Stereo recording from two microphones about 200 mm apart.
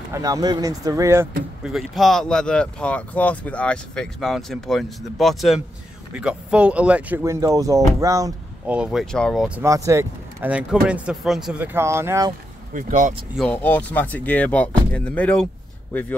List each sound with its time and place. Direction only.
0.1 s speech: 15° right (ahead or behind)
1.6 s speech: centre (ahead or behind)
8.7 s speech: 5° right (ahead or behind)
9.6 s speech: 15° right (ahead or behind)
12.7 s speech: 40° right (ahead or behind)
13.4 s speech: 5° left (ahead or behind)